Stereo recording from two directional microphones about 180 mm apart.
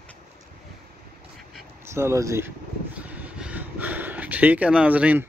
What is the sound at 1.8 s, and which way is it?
Speech, 15° right (ahead or behind).